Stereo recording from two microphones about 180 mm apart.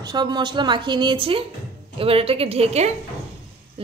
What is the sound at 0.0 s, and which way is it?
A woman's voice, 25° right (ahead or behind).